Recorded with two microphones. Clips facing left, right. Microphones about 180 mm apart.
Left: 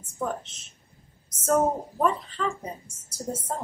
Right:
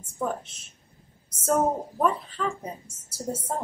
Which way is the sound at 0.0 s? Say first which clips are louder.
Right 1 dB; 10° right (ahead or behind).